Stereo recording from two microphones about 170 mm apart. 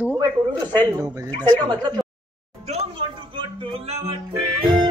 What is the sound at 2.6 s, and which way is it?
Speech, 35° right (ahead or behind).